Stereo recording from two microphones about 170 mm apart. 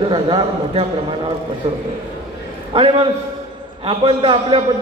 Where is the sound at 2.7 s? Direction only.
35° right (ahead or behind).